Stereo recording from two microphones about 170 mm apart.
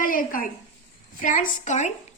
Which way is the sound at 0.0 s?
55° left (ahead or behind).